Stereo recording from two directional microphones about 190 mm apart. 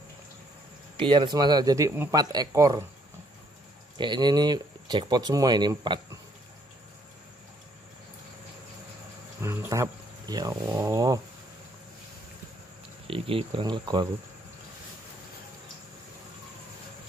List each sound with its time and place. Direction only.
0.9 s speech: 25° right (ahead or behind)
4.0 s speech: 25° right (ahead or behind)
9.4 s speech: 15° right (ahead or behind)
13.0 s speech: 30° right (ahead or behind)